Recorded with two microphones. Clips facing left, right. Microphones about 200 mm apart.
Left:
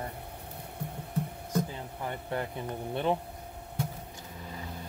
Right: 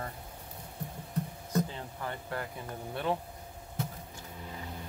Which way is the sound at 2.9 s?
20° left (ahead or behind).